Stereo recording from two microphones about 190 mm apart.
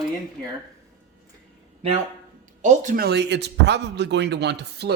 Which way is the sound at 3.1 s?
65° right (ahead or behind).